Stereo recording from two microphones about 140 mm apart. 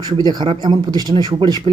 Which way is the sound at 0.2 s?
30° right (ahead or behind).